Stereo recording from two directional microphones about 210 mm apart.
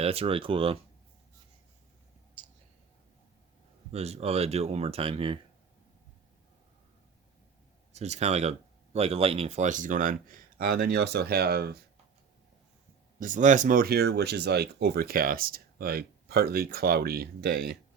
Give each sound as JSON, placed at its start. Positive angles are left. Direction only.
{"t": 0.0, "sound": "speech", "side_deg": -30}
{"t": 3.9, "sound": "speech", "side_deg": -30}
{"t": 7.9, "sound": "speech", "side_deg": -30}
{"t": 13.1, "sound": "speech", "side_deg": -40}